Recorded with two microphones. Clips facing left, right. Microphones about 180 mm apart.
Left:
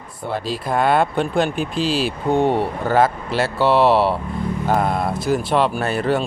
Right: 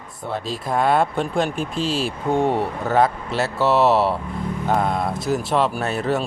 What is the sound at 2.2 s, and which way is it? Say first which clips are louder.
Speech: left 2 dB; 25° left (ahead or behind).